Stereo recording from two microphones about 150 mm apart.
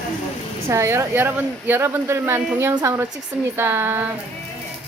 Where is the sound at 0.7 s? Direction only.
20° right (ahead or behind).